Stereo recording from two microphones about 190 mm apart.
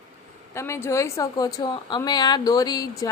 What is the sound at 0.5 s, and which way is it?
A woman's voice, 15° left (ahead or behind).